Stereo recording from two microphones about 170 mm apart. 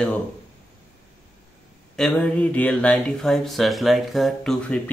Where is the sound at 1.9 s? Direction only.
Centre (ahead or behind).